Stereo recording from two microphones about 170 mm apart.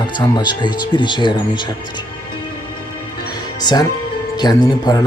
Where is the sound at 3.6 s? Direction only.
25° left (ahead or behind).